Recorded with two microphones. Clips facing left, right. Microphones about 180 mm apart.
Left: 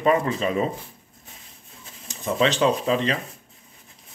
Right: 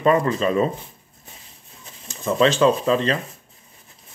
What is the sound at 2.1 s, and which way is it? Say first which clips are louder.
Speech: right 4 dB; 15° left (ahead or behind).